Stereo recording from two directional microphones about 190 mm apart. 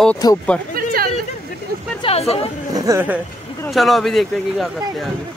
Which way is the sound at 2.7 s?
15° right (ahead or behind).